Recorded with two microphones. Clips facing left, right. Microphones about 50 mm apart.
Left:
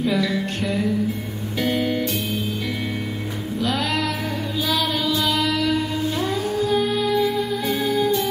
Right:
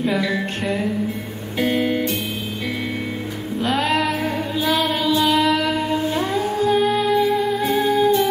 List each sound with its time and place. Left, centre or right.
0.0 s music: right
1.6 s music: centre
3.6 s music: right
7.2 s music: centre